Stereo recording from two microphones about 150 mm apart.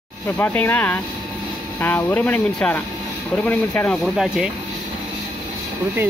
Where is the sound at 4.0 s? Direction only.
Centre (ahead or behind).